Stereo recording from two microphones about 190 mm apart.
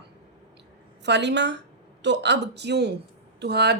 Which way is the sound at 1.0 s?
65° right (ahead or behind).